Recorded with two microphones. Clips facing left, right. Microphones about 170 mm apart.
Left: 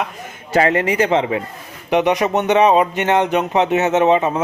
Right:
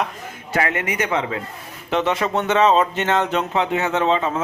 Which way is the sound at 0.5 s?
30° left (ahead or behind).